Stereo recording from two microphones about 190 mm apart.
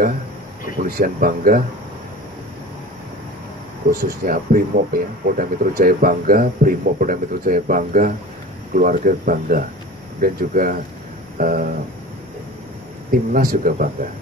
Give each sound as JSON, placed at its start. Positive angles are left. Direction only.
{"t": 0.8, "sound": "speech", "side_deg": -50}
{"t": 3.9, "sound": "speech", "side_deg": -50}
{"t": 13.3, "sound": "speech", "side_deg": -50}